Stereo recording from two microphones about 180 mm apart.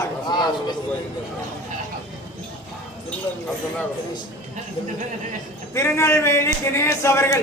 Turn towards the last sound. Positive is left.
turn(degrees=15)  # may be behind; listen again after turning